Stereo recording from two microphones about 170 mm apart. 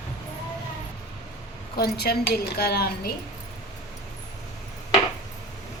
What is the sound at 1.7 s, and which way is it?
A woman's voice, 70° left (ahead or behind).